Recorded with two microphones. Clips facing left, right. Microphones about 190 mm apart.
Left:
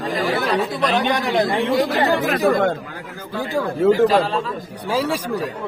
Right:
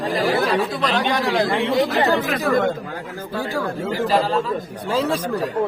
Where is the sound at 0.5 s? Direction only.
Centre (ahead or behind).